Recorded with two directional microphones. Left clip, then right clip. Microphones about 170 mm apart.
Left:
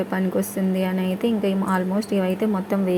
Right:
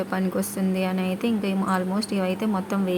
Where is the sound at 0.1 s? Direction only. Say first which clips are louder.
Left 3 dB; 15° left (ahead or behind).